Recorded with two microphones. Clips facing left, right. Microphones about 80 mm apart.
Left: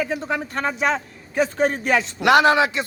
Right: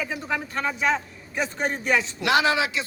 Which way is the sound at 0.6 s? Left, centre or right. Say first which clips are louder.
Left 2 dB; left.